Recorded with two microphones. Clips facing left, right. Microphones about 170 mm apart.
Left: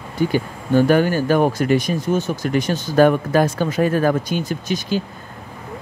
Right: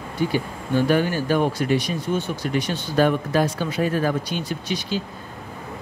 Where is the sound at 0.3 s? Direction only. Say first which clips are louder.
Left 5 dB; 50° left (ahead or behind).